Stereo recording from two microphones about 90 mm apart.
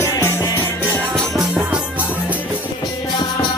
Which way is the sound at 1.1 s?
5° right (ahead or behind).